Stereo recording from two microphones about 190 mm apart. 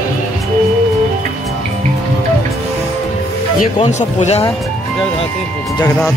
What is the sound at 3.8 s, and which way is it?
Speech, 40° left (ahead or behind).